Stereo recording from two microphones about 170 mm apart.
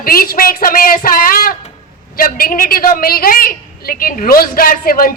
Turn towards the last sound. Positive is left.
turn(degrees=60)  # may be behind; listen again after turning